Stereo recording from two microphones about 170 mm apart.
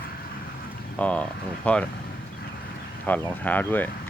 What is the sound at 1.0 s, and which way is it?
Speech, 10° left (ahead or behind).